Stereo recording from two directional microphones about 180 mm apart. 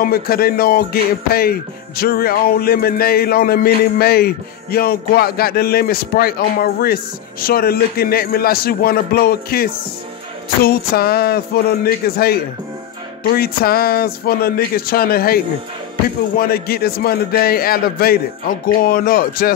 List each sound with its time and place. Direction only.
0.0 s music: 55° left (ahead or behind)